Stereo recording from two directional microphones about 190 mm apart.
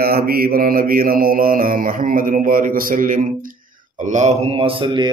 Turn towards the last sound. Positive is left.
turn(degrees=-25)  # may be behind; listen again after turning